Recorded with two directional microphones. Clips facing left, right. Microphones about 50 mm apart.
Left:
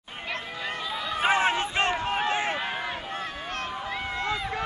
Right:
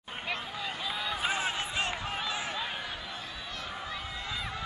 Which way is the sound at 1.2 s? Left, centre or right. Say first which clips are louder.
Left 11 dB; left.